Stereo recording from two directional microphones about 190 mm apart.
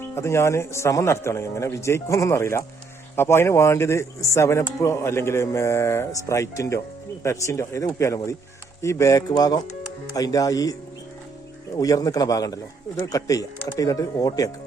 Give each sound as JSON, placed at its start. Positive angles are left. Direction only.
{"t": 0.0, "sound": "a man's voice", "side_deg": 15}
{"t": 11.8, "sound": "a man's voice", "side_deg": 20}